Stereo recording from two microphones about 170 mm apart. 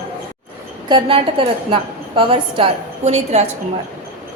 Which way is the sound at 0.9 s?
30° right (ahead or behind).